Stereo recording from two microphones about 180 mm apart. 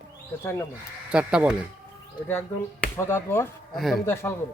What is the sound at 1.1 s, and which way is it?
Speech, 5° right (ahead or behind).